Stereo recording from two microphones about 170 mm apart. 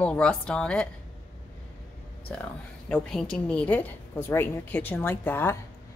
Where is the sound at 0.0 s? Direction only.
5° left (ahead or behind).